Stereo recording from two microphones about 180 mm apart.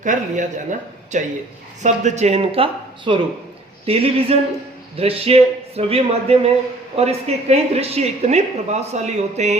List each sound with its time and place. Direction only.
0.0 s speech: 45° right (ahead or behind)